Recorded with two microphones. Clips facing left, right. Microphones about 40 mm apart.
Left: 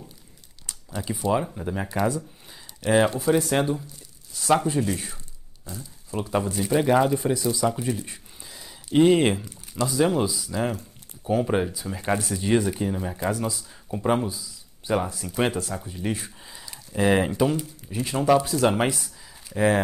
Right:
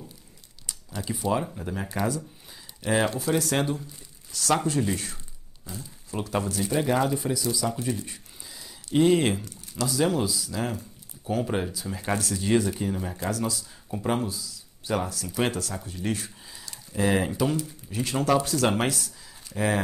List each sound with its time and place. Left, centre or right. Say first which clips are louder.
0.7 s speech: left 2 dB; centre
3.3 s speech: left 3 dB; left
6.3 s speech: left 3 dB; centre
15.3 s speech: left 3 dB; centre
18.4 s speech: left 3 dB; centre
18.9 s a sound: left 1 dB; centre